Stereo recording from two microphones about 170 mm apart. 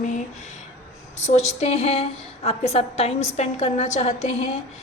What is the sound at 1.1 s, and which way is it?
A woman's voice, 40° left (ahead or behind).